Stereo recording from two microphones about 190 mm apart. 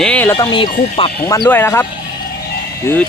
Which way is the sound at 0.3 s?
25° left (ahead or behind).